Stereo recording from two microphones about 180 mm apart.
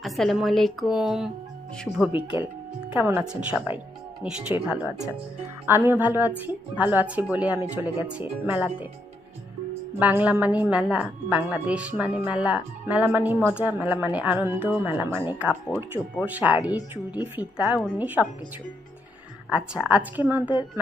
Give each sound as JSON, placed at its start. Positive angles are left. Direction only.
{"t": 0.0, "sound": "a woman's voice", "side_deg": 0}
{"t": 10.0, "sound": "a woman's voice", "side_deg": -10}
{"t": 15.7, "sound": "speech", "side_deg": 25}
{"t": 16.2, "sound": "a woman's voice", "side_deg": -10}
{"t": 19.5, "sound": "a woman's voice", "side_deg": -5}